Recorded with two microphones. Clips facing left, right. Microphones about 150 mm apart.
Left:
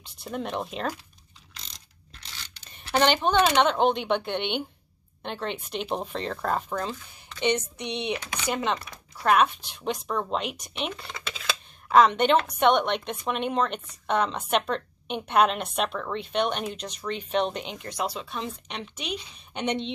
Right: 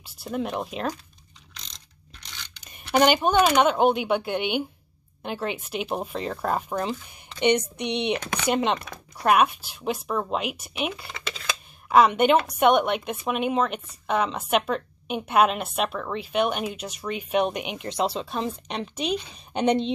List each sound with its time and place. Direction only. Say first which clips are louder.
0.0 s speech: right 3 dB; 5° right (ahead or behind)
1.5 s mechanisms: right 1 dB; 5° left (ahead or behind)
2.6 s a woman's voice: right 3 dB; 10° right (ahead or behind)
8.1 s speech: right 4 dB; 60° right (ahead or behind)
8.5 s a woman's voice: right 4 dB; 20° right (ahead or behind); by 19.9 s 35° right (ahead or behind)